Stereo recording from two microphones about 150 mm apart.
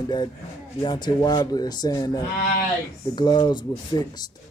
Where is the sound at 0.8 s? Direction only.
30° left (ahead or behind).